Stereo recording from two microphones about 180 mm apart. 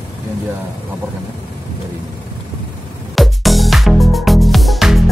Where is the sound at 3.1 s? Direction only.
Centre (ahead or behind).